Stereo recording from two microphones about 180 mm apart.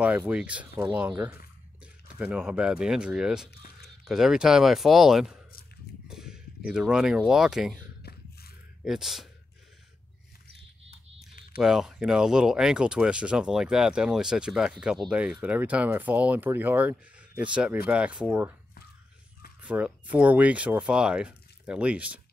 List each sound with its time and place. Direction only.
0.0 s speech: 5° right (ahead or behind)
8.0 s a sound: 60° left (ahead or behind)
8.8 s speech: centre (ahead or behind)
11.5 s speech: 5° right (ahead or behind)
19.6 s speech: 5° right (ahead or behind)